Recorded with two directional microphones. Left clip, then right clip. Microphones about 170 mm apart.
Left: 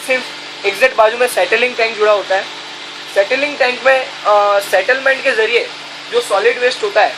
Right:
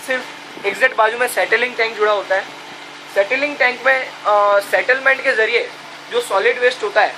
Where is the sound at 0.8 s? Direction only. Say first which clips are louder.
Left 4 dB; 40° left (ahead or behind).